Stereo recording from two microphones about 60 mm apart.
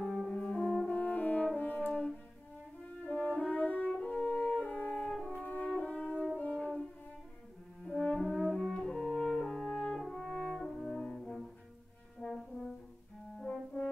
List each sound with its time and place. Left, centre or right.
0.0 s french horn: centre
0.3 s french horn: centre; by 1.9 s left
1.9 s french horn: centre
6.5 s music: centre
7.8 s french horn: centre
9.9 s french horn: centre
11.1 s music: centre
12.2 s french horn: centre